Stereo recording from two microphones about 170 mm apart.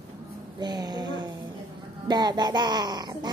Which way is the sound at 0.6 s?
25° right (ahead or behind).